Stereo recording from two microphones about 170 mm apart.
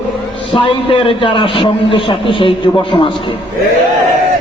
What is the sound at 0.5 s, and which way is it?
A man's voice, 30° left (ahead or behind).